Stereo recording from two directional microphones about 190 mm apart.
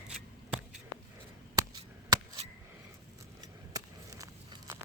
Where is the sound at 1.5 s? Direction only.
20° right (ahead or behind).